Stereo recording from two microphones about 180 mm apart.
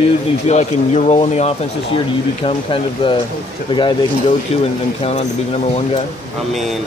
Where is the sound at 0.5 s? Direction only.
40° left (ahead or behind).